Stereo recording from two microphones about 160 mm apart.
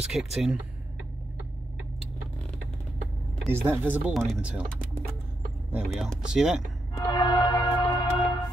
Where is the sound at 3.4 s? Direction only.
15° right (ahead or behind).